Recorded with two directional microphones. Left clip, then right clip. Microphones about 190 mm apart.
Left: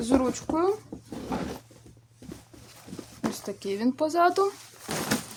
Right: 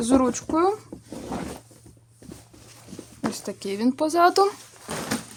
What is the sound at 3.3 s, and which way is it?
Speech, 30° right (ahead or behind).